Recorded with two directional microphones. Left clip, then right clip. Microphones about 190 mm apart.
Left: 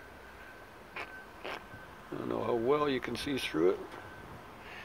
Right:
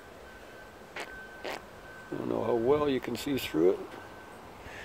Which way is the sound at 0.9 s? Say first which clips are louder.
Right 2 dB; 25° right (ahead or behind).